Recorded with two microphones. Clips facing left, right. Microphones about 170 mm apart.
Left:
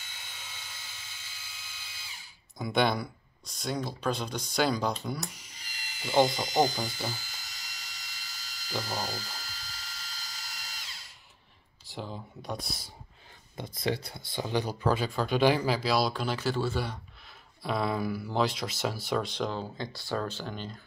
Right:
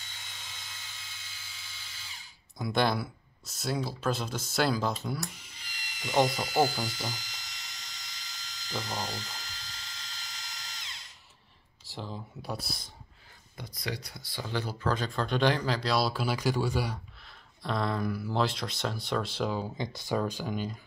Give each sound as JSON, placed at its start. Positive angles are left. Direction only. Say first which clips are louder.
{"t": 0.0, "sound": "a sound", "louder": "left 1 dB", "side_deg": 10}
{"t": 2.5, "sound": "speech", "louder": "left 1 dB", "side_deg": 0}
{"t": 5.4, "sound": "a sound", "louder": "even", "side_deg": 40}
{"t": 6.0, "sound": "speech", "louder": "left 2 dB", "side_deg": 0}
{"t": 6.9, "sound": "speech", "louder": "left 1 dB", "side_deg": 10}
{"t": 7.4, "sound": "a sound", "louder": "even", "side_deg": 5}
{"t": 11.8, "sound": "speech", "louder": "left 1 dB", "side_deg": 0}
{"t": 13.6, "sound": "speech", "louder": "left 6 dB", "side_deg": 25}
{"t": 17.6, "sound": "speech", "louder": "left 1 dB", "side_deg": 5}
{"t": 19.8, "sound": "speech", "louder": "right 3 dB", "side_deg": -20}